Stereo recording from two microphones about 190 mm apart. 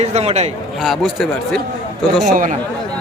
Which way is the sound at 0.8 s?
Centre (ahead or behind).